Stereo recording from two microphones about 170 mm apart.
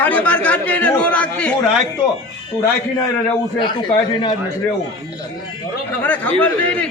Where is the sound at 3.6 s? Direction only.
25° left (ahead or behind).